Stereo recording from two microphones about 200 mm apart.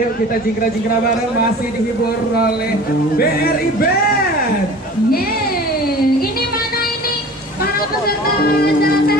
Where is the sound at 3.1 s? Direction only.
50° left (ahead or behind).